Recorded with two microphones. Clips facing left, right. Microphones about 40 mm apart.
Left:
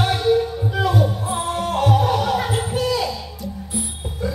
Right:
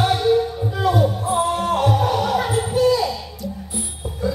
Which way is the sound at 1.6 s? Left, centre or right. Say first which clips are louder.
Even; centre.